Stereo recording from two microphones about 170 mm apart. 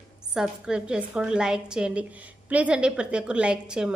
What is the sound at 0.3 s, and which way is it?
A woman's voice, 5° right (ahead or behind).